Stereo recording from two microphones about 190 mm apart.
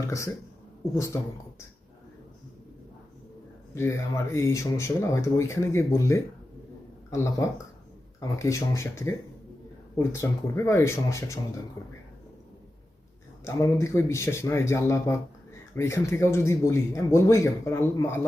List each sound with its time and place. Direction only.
1.1 s speech: 15° left (ahead or behind)
3.8 s speech: 15° left (ahead or behind)
13.4 s speech: 15° left (ahead or behind)